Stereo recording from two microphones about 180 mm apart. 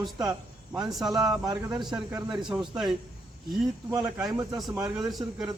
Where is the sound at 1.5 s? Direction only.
15° right (ahead or behind).